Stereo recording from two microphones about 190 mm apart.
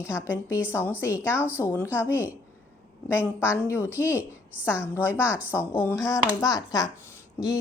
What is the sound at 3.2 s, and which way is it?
Speech, 5° right (ahead or behind).